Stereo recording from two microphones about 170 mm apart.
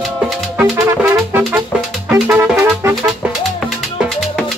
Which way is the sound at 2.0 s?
10° right (ahead or behind).